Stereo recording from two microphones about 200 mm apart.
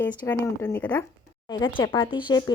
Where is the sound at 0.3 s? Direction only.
15° left (ahead or behind).